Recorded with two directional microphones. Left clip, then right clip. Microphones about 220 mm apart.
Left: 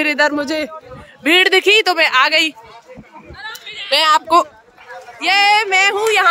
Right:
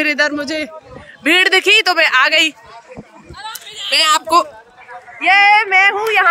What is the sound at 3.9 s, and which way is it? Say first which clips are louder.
Speech: even; 20° left (ahead or behind).